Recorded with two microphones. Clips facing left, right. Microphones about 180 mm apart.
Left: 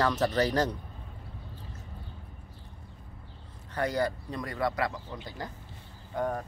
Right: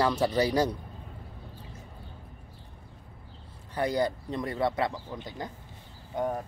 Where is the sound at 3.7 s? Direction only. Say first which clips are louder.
Right 2 dB; 15° right (ahead or behind).